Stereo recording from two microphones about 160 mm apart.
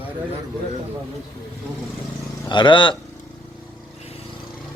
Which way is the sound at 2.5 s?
30° left (ahead or behind).